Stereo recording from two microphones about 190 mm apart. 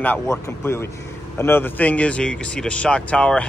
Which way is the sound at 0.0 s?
10° left (ahead or behind).